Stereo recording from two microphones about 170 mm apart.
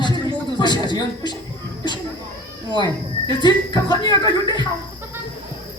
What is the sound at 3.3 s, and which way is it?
Speech, 25° left (ahead or behind).